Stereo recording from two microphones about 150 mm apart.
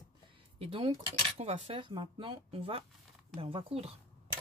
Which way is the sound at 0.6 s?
35° right (ahead or behind).